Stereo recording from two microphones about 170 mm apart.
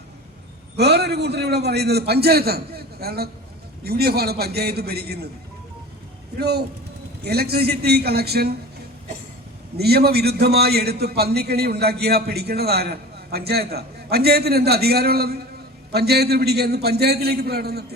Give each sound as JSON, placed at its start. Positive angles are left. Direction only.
{"t": 0.8, "sound": "a man's voice", "side_deg": -75}
{"t": 6.4, "sound": "a man's voice", "side_deg": -70}
{"t": 9.7, "sound": "a man's voice", "side_deg": -70}